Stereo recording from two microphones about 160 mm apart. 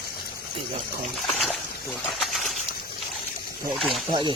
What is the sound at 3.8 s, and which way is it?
Speech, centre (ahead or behind).